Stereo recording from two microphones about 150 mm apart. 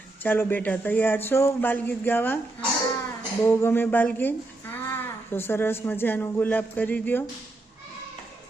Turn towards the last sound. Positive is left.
turn(degrees=10)  # may be behind; listen again after turning